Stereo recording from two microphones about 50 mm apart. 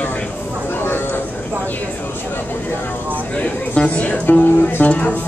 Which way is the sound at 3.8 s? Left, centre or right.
Left.